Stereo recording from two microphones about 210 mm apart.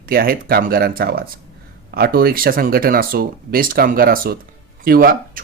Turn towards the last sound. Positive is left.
turn(degrees=-45)  # may be behind; listen again after turning